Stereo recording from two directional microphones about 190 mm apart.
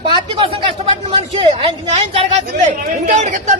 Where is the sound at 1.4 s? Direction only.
25° right (ahead or behind).